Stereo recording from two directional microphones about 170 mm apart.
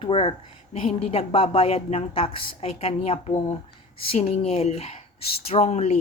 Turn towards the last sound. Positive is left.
turn(degrees=40)  # may be behind; listen again after turning